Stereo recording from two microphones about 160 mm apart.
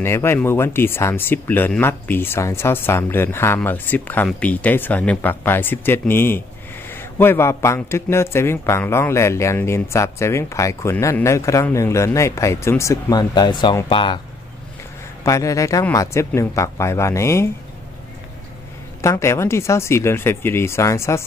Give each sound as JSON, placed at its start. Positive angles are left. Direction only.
{"t": 0.0, "sound": "a man's voice", "side_deg": 15}
{"t": 15.2, "sound": "speech", "side_deg": 20}
{"t": 18.9, "sound": "a man's voice", "side_deg": 20}